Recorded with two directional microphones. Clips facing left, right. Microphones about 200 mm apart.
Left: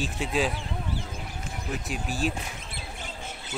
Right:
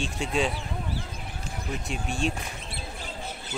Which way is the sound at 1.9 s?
Centre (ahead or behind).